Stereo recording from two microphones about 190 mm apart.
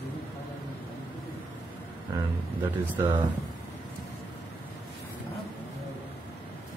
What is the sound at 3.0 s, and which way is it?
Speech, 15° right (ahead or behind).